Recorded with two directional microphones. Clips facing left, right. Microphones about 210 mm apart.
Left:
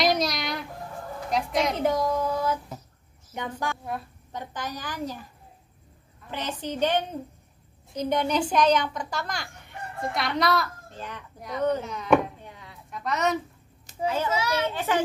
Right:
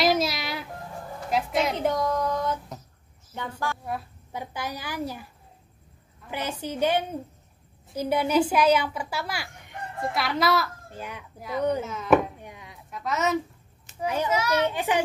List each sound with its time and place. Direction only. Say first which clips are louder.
0.0 s a sound: right 1 dB; 5° right (ahead or behind)
1.3 s a woman's voice: even; centre (ahead or behind)
3.3 s a woman's voice: left 1 dB; 15° left (ahead or behind)
3.8 s speech: right 1 dB; 5° right (ahead or behind)
6.3 s speech: even; 10° right (ahead or behind)
11.8 s chopping: right 2 dB; centre (ahead or behind)
12.4 s chopping: right 2 dB; 15° right (ahead or behind)
12.9 s chopping: even; centre (ahead or behind)
14.0 s speech: right 1 dB; 15° right (ahead or behind)